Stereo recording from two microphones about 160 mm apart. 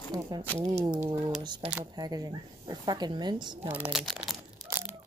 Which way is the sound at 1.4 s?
30° right (ahead or behind).